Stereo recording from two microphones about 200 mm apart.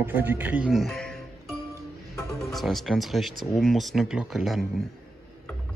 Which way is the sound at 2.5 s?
Centre (ahead or behind).